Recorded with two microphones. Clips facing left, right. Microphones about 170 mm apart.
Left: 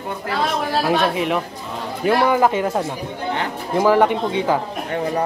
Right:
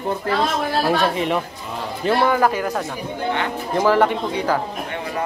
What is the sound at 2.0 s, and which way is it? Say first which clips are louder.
Speech: left 1 dB; 15° left (ahead or behind).